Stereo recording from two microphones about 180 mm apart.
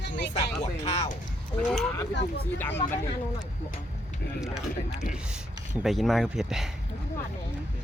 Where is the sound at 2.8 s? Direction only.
30° left (ahead or behind).